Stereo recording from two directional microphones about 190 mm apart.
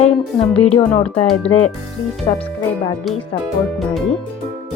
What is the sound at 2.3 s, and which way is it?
Speech, 25° left (ahead or behind).